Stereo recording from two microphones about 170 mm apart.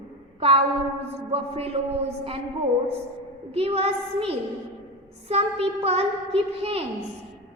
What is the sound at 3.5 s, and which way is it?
A woman's voice, 35° right (ahead or behind).